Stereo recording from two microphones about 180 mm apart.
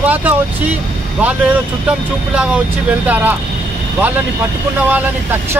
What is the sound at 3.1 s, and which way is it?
Speech, 10° right (ahead or behind).